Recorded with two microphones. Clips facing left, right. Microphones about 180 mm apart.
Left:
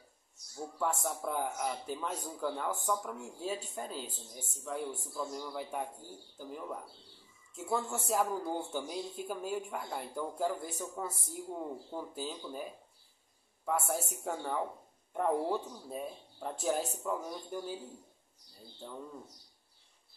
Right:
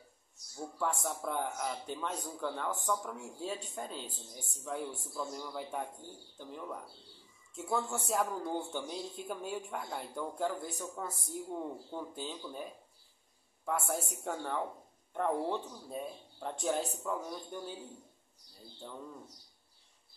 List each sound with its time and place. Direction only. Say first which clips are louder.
0.7 s a man's voice: left 1 dB; centre (ahead or behind)
13.7 s a man's voice: left 1 dB; centre (ahead or behind)
18.8 s a man's voice: left 1 dB; centre (ahead or behind)